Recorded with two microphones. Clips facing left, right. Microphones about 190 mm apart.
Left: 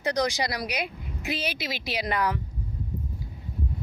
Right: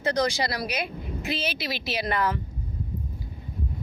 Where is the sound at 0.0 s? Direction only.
15° left (ahead or behind).